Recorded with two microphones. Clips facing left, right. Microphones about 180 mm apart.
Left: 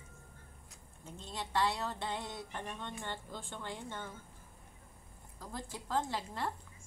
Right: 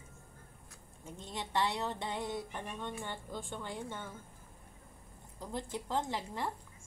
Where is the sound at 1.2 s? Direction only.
20° right (ahead or behind).